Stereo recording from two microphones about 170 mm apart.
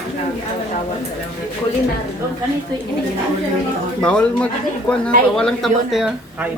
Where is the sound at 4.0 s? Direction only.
5° left (ahead or behind).